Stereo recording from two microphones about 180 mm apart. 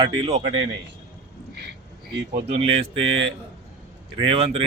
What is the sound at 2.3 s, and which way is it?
Speech, 35° right (ahead or behind).